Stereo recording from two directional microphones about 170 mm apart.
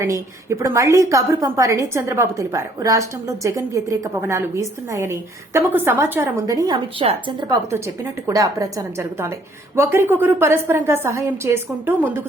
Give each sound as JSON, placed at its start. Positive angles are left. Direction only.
{"t": 0.0, "sound": "a woman's voice", "side_deg": -15}
{"t": 7.0, "sound": "a woman's voice", "side_deg": -35}